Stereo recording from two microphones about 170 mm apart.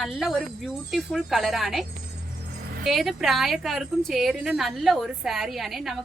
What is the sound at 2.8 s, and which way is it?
A woman's voice, centre (ahead or behind).